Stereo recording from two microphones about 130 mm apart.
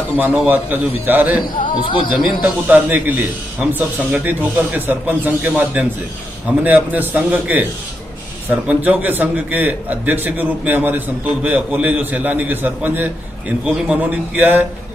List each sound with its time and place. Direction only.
0.2 s a man's voice: 15° right (ahead or behind)
1.8 s speech: 40° left (ahead or behind)
2.1 s a man's voice: 10° right (ahead or behind)